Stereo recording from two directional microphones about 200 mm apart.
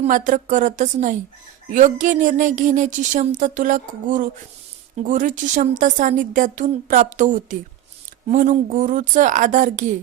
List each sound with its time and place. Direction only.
0.0 s speech: 40° right (ahead or behind)